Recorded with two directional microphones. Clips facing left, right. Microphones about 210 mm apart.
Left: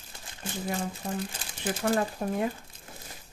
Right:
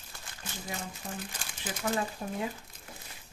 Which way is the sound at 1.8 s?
55° left (ahead or behind).